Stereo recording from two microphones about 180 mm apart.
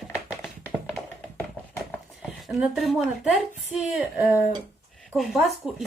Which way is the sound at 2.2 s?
Centre (ahead or behind).